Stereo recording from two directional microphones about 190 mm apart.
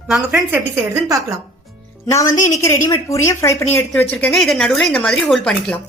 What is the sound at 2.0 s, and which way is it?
Speech, 20° left (ahead or behind).